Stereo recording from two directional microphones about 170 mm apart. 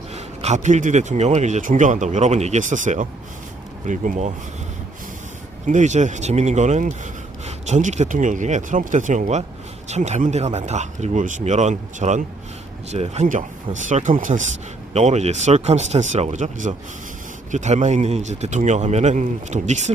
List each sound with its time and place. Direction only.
0.1 s speech: 45° right (ahead or behind)
5.6 s speech: 45° right (ahead or behind)